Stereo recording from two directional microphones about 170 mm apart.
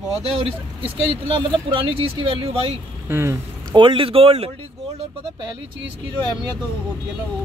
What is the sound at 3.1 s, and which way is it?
Speech, 15° right (ahead or behind).